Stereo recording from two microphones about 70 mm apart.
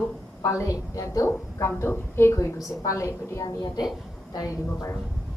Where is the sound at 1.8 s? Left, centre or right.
Left.